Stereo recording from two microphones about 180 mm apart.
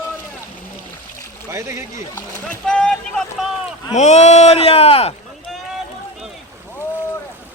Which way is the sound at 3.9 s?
40° left (ahead or behind).